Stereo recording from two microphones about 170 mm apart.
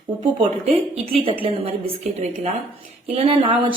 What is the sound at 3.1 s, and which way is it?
Speech, 35° right (ahead or behind).